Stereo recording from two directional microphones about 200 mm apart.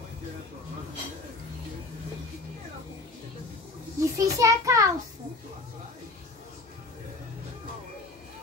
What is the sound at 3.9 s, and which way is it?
Speech, 15° right (ahead or behind).